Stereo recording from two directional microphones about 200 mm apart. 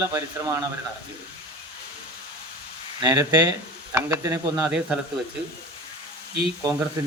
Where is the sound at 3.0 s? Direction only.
20° right (ahead or behind).